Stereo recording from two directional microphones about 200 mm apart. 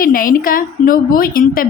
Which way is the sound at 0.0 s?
45° left (ahead or behind).